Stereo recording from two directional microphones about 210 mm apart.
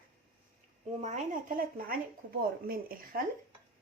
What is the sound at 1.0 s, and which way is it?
Speech, 35° right (ahead or behind).